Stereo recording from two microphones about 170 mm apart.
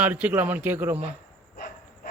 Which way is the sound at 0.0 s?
10° right (ahead or behind).